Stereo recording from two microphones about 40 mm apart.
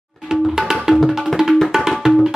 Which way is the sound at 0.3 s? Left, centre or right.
Centre.